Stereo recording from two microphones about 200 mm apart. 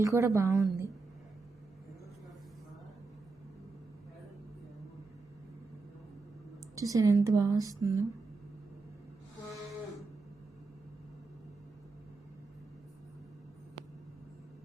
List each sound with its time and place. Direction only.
0.0 s a woman's voice: 15° right (ahead or behind)
6.7 s a woman's voice: 15° right (ahead or behind)